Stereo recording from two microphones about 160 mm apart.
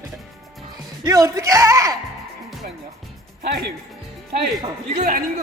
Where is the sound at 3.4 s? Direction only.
90° right.